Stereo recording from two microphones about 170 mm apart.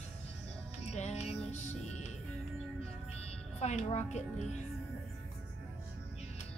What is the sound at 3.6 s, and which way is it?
Speech, 40° left (ahead or behind).